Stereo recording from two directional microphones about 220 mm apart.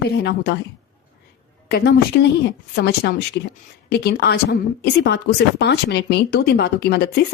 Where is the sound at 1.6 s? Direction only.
45° left (ahead or behind).